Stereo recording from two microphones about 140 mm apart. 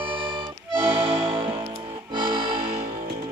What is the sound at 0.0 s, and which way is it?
Accordion, 35° right (ahead or behind).